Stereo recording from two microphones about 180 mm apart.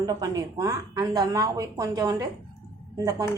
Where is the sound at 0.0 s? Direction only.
20° right (ahead or behind).